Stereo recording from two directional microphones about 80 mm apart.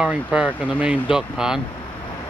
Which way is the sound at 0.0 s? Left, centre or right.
Centre.